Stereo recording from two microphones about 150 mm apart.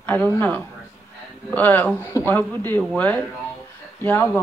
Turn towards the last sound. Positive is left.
turn(degrees=15)  # may be behind; listen again after turning